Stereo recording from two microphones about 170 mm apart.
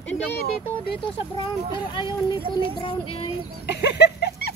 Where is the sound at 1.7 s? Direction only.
30° left (ahead or behind).